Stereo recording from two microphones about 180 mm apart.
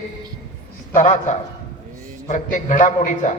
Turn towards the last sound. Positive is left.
turn(degrees=45)  # may be behind; listen again after turning